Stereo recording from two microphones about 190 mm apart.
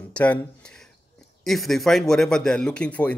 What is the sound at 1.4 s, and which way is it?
Speech, centre (ahead or behind).